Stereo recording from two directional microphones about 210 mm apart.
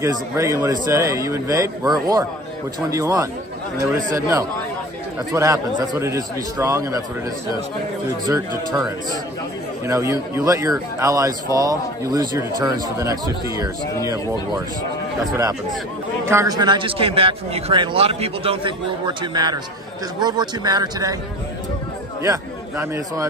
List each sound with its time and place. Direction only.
0.0 s speech: 15° right (ahead or behind)
8.3 s speech: 20° right (ahead or behind)
16.3 s a man's voice: 15° right (ahead or behind)
22.2 s a man's voice: 15° right (ahead or behind)